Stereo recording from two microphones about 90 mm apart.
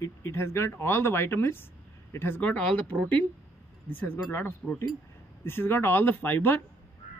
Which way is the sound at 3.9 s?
20° left (ahead or behind).